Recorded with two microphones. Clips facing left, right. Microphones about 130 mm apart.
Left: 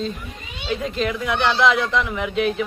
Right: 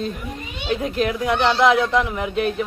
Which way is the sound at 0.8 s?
50° right (ahead or behind).